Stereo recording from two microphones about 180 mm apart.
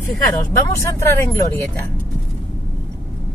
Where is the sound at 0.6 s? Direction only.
15° left (ahead or behind).